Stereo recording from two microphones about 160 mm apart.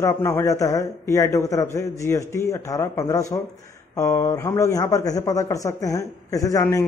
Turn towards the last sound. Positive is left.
turn(degrees=20)  # may be behind; listen again after turning